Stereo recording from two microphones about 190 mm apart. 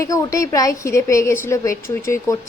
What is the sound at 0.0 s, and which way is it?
A woman's voice, 15° left (ahead or behind).